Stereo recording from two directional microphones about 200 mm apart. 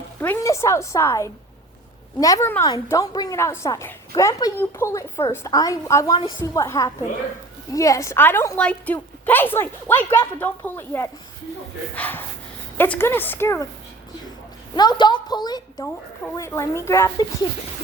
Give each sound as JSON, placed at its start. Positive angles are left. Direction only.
{"t": 0.2, "sound": "a woman's voice", "side_deg": 15}
{"t": 14.8, "sound": "a woman's voice", "side_deg": 20}